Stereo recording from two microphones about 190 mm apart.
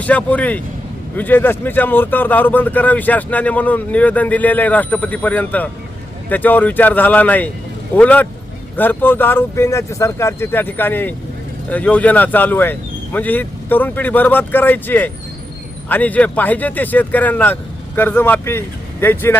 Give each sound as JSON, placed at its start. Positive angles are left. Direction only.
{"t": 0.0, "sound": "speech", "side_deg": 5}